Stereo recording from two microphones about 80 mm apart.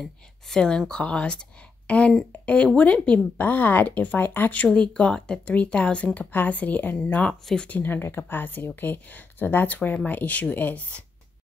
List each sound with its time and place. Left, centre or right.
0.0 s speech: centre; by 7.2 s left
7.2 s speech: centre